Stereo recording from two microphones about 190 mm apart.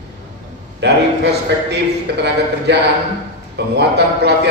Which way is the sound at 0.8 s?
60° right (ahead or behind).